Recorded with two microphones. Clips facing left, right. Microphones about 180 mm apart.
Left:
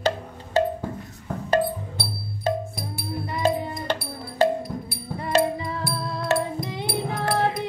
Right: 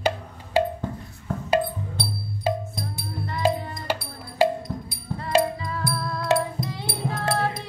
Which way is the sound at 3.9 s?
10° right (ahead or behind).